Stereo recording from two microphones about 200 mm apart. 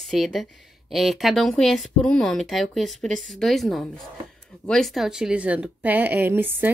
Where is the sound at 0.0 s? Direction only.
Centre (ahead or behind).